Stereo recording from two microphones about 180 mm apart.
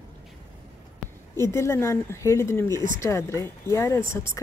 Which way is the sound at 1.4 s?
15° left (ahead or behind).